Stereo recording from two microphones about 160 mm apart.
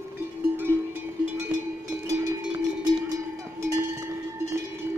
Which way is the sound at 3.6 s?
15° right (ahead or behind).